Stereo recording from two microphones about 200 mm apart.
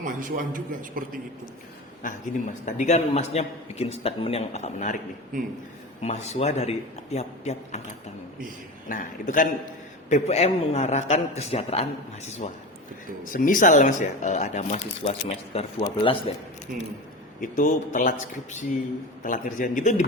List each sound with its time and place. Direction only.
0.0 s a man's voice: 45° right (ahead or behind)
2.0 s a man's voice: 40° left (ahead or behind)
5.3 s a man's voice: 40° right (ahead or behind)
6.0 s a man's voice: 35° left (ahead or behind)
8.9 s a man's voice: 40° left (ahead or behind)
16.7 s a man's voice: 45° right (ahead or behind)
17.4 s a man's voice: 40° left (ahead or behind)
19.2 s a man's voice: 40° left (ahead or behind)